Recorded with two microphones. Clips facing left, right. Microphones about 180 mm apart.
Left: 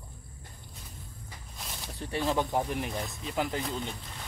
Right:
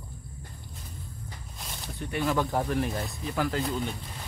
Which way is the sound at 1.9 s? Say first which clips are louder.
Right 1 dB; 30° left (ahead or behind).